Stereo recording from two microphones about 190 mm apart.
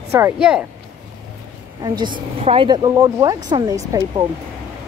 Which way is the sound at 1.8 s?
25° right (ahead or behind).